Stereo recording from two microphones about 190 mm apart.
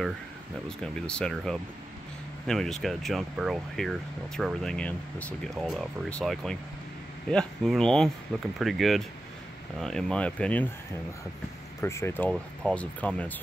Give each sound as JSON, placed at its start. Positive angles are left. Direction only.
{"t": 0.7, "sound": "speech", "side_deg": 5}
{"t": 11.8, "sound": "speech", "side_deg": 15}